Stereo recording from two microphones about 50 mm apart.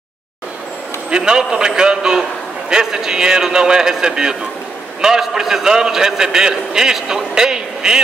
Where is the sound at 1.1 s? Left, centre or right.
Centre.